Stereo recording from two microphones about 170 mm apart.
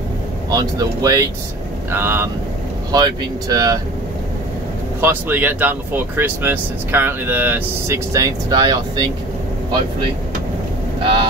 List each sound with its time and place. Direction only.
0.5 s speech: 20° right (ahead or behind)
5.0 s speech: 10° right (ahead or behind)